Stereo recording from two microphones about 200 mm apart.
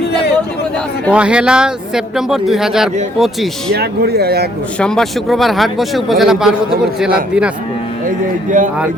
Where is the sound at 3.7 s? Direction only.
55° right (ahead or behind).